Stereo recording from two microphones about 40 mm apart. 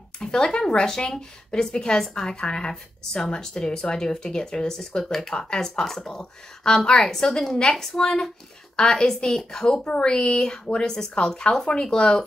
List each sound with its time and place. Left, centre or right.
0.2 s a woman's voice: centre